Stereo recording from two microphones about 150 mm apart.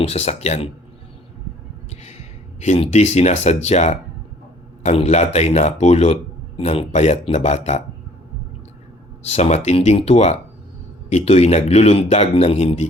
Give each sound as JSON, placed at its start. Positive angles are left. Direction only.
{"t": 0.0, "sound": "a man's voice", "side_deg": 45}
{"t": 2.0, "sound": "a man's voice", "side_deg": 45}
{"t": 9.2, "sound": "a man's voice", "side_deg": 45}